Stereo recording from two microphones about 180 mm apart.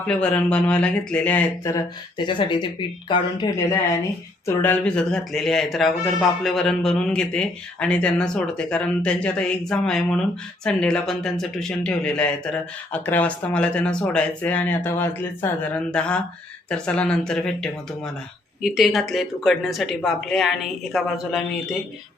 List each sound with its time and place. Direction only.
0.0 s speech: 5° left (ahead or behind)